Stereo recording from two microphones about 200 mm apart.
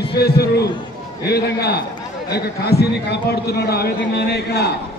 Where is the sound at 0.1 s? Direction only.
50° left (ahead or behind).